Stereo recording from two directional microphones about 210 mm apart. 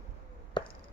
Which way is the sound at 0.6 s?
20° left (ahead or behind).